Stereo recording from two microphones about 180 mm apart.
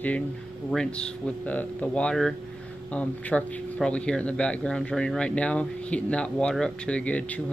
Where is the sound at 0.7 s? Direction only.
5° left (ahead or behind).